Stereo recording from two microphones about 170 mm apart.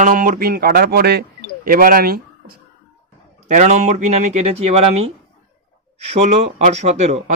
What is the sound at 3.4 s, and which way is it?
Speech, 45° right (ahead or behind).